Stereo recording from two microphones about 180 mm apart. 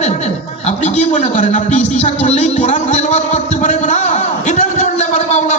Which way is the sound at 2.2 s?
40° left (ahead or behind).